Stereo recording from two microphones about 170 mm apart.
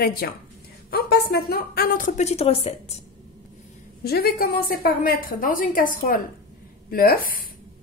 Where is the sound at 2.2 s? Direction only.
40° left (ahead or behind).